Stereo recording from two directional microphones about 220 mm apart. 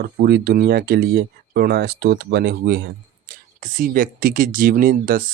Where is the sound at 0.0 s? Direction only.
45° right (ahead or behind).